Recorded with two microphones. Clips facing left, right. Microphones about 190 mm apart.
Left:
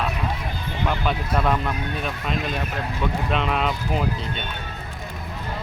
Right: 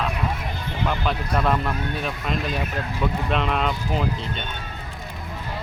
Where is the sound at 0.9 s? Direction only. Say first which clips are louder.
Left 1 dB; centre (ahead or behind).